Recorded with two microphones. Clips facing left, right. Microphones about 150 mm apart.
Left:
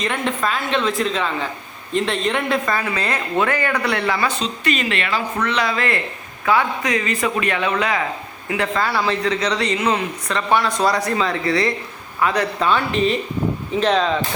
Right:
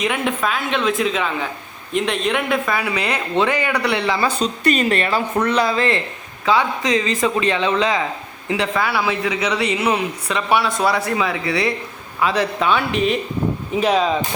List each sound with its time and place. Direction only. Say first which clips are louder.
0.0 s a man's voice: right 1 dB; 5° right (ahead or behind)
4.2 s speech: right 3 dB; 40° right (ahead or behind)
5.6 s speech: right 3 dB; 30° right (ahead or behind)
8.7 s a man's voice: left 2 dB; 5° right (ahead or behind)
12.5 s a man's voice: even; 5° right (ahead or behind)